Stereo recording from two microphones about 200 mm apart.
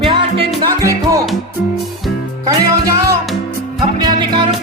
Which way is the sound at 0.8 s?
15° right (ahead or behind).